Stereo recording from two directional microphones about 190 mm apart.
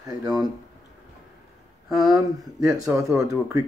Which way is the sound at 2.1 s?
15° right (ahead or behind).